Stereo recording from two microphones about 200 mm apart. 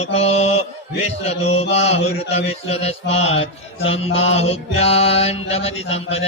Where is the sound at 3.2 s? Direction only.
75° left (ahead or behind).